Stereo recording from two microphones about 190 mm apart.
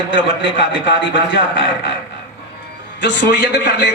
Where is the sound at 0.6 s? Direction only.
70° left (ahead or behind).